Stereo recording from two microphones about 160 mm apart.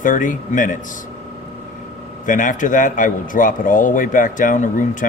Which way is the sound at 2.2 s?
55° left (ahead or behind).